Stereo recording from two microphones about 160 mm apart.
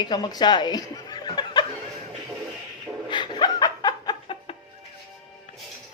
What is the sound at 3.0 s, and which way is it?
Music, 30° left (ahead or behind).